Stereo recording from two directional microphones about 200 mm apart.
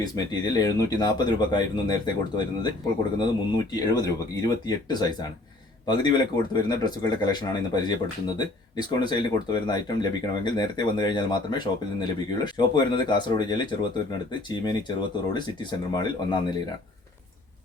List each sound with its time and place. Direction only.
0.0 s speech: 20° left (ahead or behind)
3.8 s speech: 20° left (ahead or behind)